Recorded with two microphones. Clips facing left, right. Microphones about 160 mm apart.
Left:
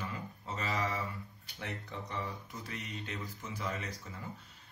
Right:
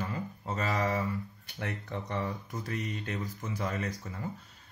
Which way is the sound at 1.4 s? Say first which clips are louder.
Right 5 dB; 55° right (ahead or behind).